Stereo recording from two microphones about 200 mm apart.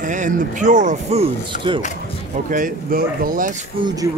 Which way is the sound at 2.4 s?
45° right (ahead or behind).